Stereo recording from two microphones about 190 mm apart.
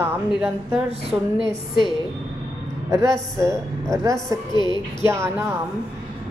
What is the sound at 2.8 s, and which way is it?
Speech, 15° right (ahead or behind).